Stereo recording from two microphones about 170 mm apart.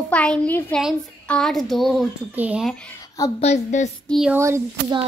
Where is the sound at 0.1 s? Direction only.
5° left (ahead or behind).